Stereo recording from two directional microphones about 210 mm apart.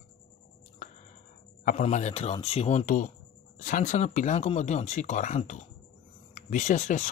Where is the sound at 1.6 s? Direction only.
40° left (ahead or behind).